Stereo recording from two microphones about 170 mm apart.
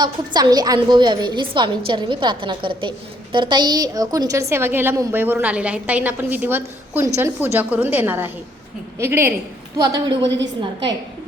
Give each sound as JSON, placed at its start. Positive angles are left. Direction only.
{"t": 0.0, "sound": "a woman's voice", "side_deg": -25}
{"t": 10.2, "sound": "a woman's voice", "side_deg": -90}
{"t": 10.6, "sound": "a woman's voice", "side_deg": -25}